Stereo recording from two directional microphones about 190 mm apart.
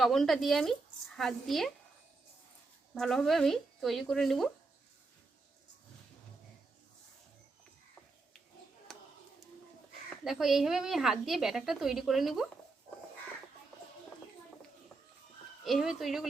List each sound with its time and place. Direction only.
0.0 s a woman's voice: centre (ahead or behind)
2.9 s a woman's voice: centre (ahead or behind)
8.9 s a sound: centre (ahead or behind)
10.2 s a woman's voice: centre (ahead or behind)
15.6 s a woman's voice: centre (ahead or behind)